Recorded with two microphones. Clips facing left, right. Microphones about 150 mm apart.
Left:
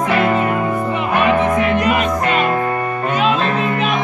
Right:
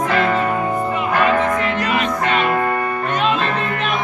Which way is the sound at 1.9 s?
45° left (ahead or behind).